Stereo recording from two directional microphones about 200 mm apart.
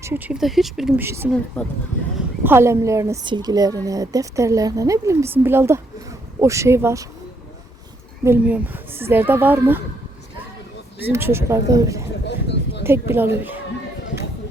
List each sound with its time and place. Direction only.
0.0 s speech: 10° right (ahead or behind)
1.6 s speech: 5° left (ahead or behind)
2.4 s speech: 10° right (ahead or behind)
8.2 s speech: 10° right (ahead or behind)
11.0 s speech: 10° right (ahead or behind)
12.2 s a sound: 60° left (ahead or behind)
12.8 s speech: 10° right (ahead or behind)